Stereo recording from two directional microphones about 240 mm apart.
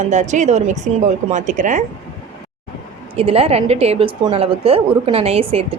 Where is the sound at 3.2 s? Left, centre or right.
Right.